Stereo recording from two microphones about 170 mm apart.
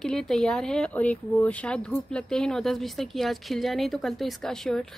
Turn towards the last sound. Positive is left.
turn(degrees=5)  # may be behind; listen again after turning